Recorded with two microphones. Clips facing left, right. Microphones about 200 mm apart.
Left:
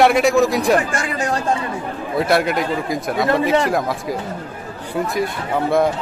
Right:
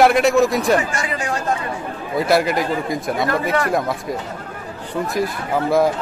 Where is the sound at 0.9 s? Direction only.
45° left (ahead or behind).